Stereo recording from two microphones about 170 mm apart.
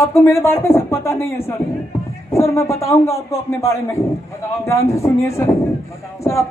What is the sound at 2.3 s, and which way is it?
Speech, 15° left (ahead or behind).